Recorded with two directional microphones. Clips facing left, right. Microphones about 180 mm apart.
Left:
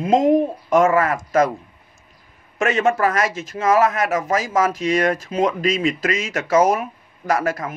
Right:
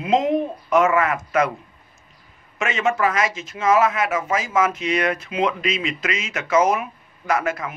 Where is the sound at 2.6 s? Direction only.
45° left (ahead or behind).